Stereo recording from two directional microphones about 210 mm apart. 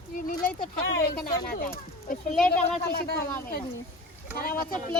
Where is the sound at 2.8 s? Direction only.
45° left (ahead or behind).